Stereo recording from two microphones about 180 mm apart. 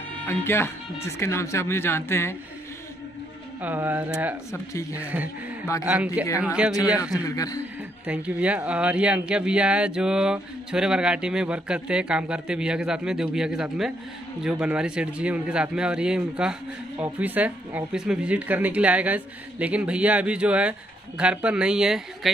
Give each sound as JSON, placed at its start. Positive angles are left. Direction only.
{"t": 0.3, "sound": "speech", "side_deg": 15}
{"t": 3.6, "sound": "speech", "side_deg": -10}
{"t": 7.2, "sound": "a man's voice", "side_deg": 20}
{"t": 8.1, "sound": "speech", "side_deg": -5}